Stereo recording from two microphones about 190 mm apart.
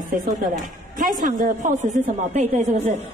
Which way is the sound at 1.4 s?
40° right (ahead or behind).